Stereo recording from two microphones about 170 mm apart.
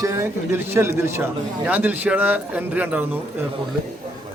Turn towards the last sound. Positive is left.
turn(degrees=-10)  # may be behind; listen again after turning